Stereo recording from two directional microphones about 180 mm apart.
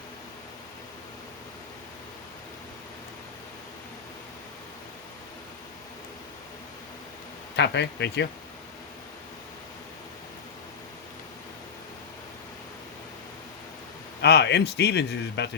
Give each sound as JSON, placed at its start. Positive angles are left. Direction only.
{"t": 7.5, "sound": "a man's voice", "side_deg": 70}
{"t": 14.2, "sound": "a man's voice", "side_deg": 70}